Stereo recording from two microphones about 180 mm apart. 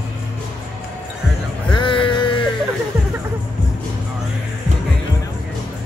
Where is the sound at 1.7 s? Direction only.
30° left (ahead or behind).